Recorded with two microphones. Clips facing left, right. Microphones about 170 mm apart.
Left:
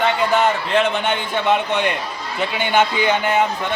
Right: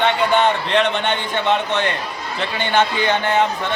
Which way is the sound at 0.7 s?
5° left (ahead or behind).